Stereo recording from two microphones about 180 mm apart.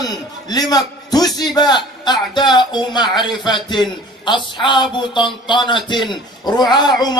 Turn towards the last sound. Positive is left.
turn(degrees=25)  # may be behind; listen again after turning